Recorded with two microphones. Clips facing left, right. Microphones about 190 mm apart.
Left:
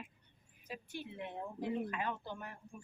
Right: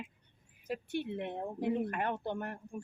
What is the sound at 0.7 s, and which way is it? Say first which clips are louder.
Speech: right 10 dB; 65° right (ahead or behind).